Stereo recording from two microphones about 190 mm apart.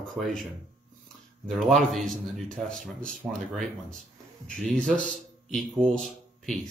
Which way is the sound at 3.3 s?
45° right (ahead or behind).